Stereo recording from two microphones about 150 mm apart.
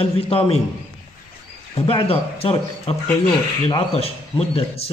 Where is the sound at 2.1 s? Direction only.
40° left (ahead or behind).